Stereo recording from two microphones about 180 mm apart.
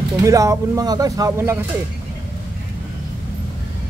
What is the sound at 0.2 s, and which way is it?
Speech, 15° right (ahead or behind).